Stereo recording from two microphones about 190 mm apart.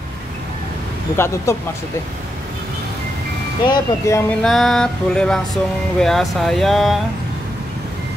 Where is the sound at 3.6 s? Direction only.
20° left (ahead or behind).